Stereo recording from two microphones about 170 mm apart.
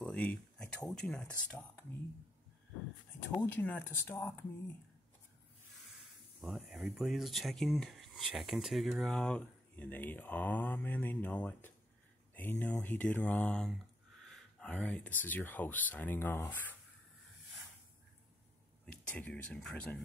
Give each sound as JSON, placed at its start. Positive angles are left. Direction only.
{"t": 0.0, "sound": "speech", "side_deg": 5}
{"t": 3.3, "sound": "speech", "side_deg": 10}
{"t": 6.4, "sound": "speech", "side_deg": 0}
{"t": 14.2, "sound": "a sound", "side_deg": 5}
{"t": 15.2, "sound": "speech", "side_deg": 10}
{"t": 18.9, "sound": "speech", "side_deg": 10}